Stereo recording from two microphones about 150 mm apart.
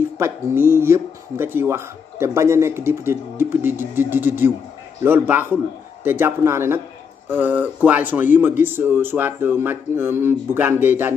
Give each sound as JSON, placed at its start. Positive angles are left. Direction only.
{"t": 0.2, "sound": "speech", "side_deg": -15}